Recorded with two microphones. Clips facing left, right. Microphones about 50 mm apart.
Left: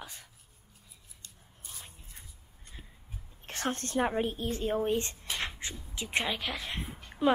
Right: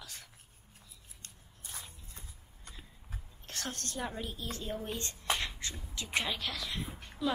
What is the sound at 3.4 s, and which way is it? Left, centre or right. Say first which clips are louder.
A woman's voice: left 7 dB; left.